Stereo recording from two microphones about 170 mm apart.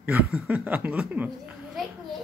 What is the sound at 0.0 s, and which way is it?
Speech, 5° right (ahead or behind).